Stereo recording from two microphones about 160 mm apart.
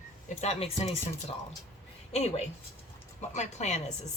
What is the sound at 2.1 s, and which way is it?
A woman's voice, 40° left (ahead or behind).